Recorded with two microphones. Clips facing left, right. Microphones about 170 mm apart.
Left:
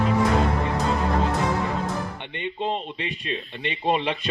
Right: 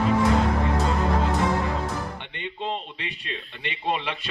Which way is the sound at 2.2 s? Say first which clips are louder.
Left 4 dB; 20° left (ahead or behind).